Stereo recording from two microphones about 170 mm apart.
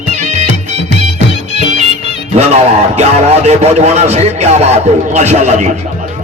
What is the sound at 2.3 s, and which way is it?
A man's voice, 40° right (ahead or behind).